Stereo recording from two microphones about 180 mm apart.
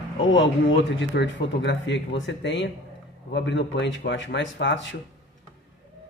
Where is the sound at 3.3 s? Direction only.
75° left (ahead or behind).